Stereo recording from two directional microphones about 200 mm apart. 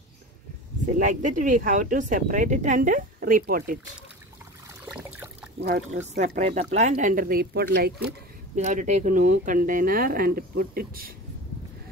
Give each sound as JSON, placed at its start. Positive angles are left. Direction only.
{"t": 0.8, "sound": "speech", "side_deg": -40}
{"t": 4.8, "sound": "trickle", "side_deg": -5}
{"t": 5.6, "sound": "speech", "side_deg": -35}
{"t": 8.5, "sound": "speech", "side_deg": -35}